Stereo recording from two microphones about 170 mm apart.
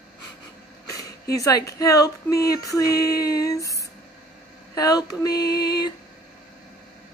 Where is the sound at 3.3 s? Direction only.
20° left (ahead or behind).